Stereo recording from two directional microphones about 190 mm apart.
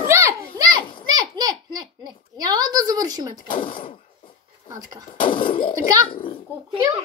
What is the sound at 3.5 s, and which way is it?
Speech, 25° left (ahead or behind).